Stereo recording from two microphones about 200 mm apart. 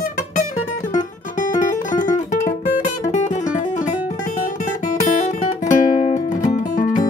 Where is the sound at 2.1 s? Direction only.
15° left (ahead or behind).